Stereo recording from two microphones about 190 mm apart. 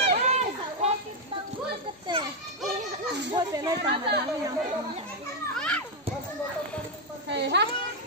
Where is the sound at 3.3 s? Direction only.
20° right (ahead or behind).